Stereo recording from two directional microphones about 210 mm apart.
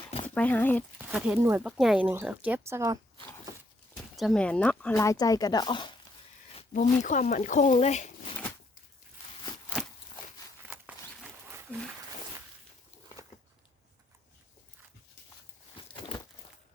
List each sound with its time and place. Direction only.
0.3 s speech: 10° left (ahead or behind)
1.1 s speech: 10° right (ahead or behind)
3.9 s speech: centre (ahead or behind); by 8.4 s 35° left (ahead or behind)
10.7 s a sound: 5° right (ahead or behind)
15.9 s crumpling: 25° left (ahead or behind)